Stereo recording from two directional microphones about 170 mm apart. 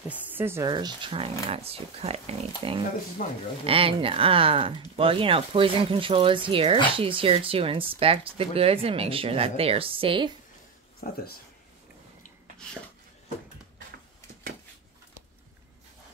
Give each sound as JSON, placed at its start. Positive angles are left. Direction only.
{"t": 0.1, "sound": "speech", "side_deg": -10}
{"t": 0.7, "sound": "speech", "side_deg": -25}
{"t": 3.2, "sound": "speech", "side_deg": 50}
{"t": 3.6, "sound": "speech", "side_deg": -30}
{"t": 11.0, "sound": "speech", "side_deg": 60}